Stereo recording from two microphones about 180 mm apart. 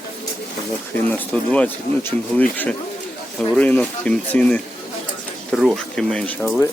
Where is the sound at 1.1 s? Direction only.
10° left (ahead or behind).